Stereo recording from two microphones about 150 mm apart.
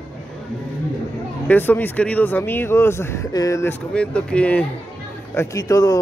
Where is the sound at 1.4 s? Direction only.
10° left (ahead or behind).